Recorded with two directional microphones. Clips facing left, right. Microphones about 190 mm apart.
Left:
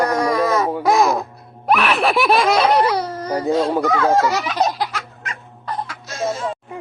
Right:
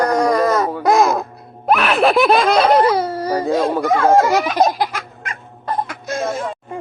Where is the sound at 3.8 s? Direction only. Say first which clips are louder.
Right 3 dB; 50° right (ahead or behind).